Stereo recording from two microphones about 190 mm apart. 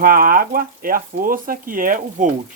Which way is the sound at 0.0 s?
50° right (ahead or behind).